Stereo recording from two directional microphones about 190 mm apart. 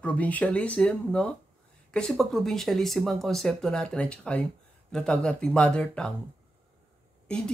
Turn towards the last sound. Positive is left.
turn(degrees=5)  # may be behind; listen again after turning